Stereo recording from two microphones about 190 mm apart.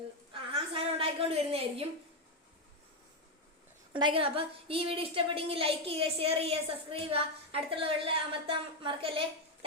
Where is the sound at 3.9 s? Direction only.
25° right (ahead or behind).